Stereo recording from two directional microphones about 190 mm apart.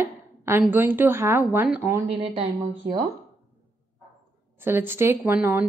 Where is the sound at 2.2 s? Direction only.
25° right (ahead or behind).